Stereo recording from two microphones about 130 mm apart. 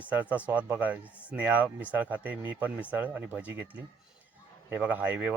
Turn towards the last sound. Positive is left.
turn(degrees=-15)  # may be behind; listen again after turning